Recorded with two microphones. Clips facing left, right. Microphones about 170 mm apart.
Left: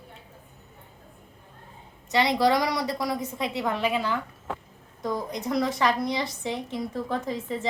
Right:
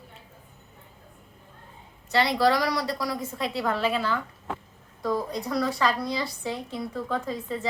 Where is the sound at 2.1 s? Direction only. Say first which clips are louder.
Even; 20° left (ahead or behind).